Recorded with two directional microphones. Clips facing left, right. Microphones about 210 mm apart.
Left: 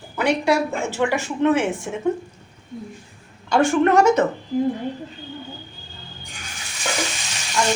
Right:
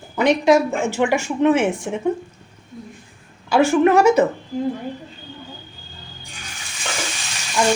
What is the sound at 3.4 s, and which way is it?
Speech, 5° right (ahead or behind).